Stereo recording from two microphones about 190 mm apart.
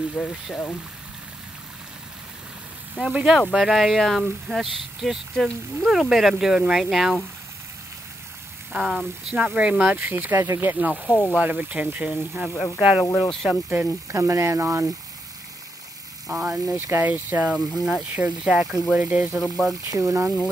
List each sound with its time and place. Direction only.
0.1 s speech: 5° left (ahead or behind)
3.0 s speech: 5° right (ahead or behind)
8.7 s speech: 5° right (ahead or behind)
11.1 s speech: 5° left (ahead or behind)
11.3 s speech: 5° right (ahead or behind)
13.0 s speech: 20° left (ahead or behind)
13.3 s speech: centre (ahead or behind)
16.3 s speech: 5° right (ahead or behind)
19.9 s speech: 15° right (ahead or behind)